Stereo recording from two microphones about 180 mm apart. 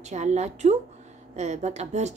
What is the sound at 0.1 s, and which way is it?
A woman's voice, 40° right (ahead or behind).